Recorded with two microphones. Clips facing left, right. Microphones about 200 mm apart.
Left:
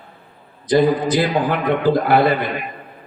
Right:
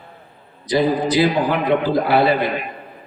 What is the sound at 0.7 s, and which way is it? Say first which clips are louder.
A man's voice: left 2 dB; 50° left (ahead or behind).